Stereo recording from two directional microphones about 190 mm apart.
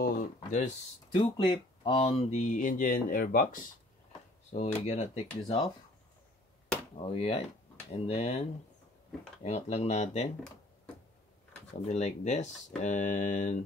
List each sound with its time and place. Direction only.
0.0 s speech: 40° left (ahead or behind)
1.1 s speech: 25° left (ahead or behind); by 3.6 s 50° left (ahead or behind)
4.5 s speech: 35° left (ahead or behind)
7.0 s speech: 30° left (ahead or behind)
11.9 s speech: 40° left (ahead or behind)